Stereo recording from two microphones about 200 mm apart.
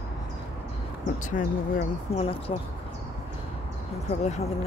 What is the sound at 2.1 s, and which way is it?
Speech, 30° left (ahead or behind).